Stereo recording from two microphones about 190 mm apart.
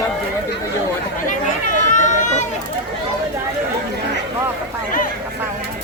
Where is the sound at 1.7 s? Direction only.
40° left (ahead or behind).